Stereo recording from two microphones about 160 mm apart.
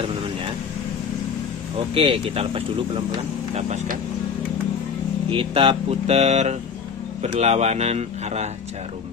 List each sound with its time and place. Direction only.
2.0 s speech: 35° right (ahead or behind); by 4.0 s 50° right (ahead or behind)
5.3 s speech: 35° right (ahead or behind)